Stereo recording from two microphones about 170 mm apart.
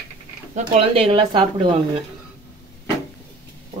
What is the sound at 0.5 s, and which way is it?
Speech, 35° right (ahead or behind).